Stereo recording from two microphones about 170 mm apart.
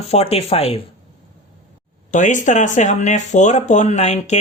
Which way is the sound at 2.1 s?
45° left (ahead or behind).